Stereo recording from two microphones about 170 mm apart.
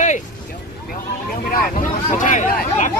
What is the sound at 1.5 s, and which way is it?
Speech, 55° left (ahead or behind).